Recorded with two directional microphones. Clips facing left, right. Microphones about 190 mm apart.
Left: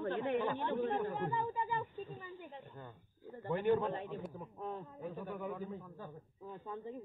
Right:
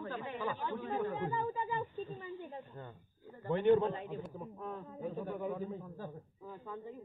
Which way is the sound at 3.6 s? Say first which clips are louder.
Right 5 dB; 25° right (ahead or behind).